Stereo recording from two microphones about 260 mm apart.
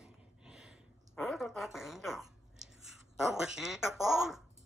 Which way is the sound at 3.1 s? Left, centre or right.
Centre.